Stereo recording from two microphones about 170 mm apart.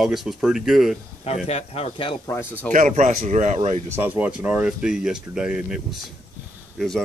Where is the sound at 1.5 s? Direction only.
40° left (ahead or behind).